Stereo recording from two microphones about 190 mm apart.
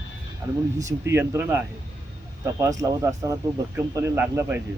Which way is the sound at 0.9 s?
15° right (ahead or behind).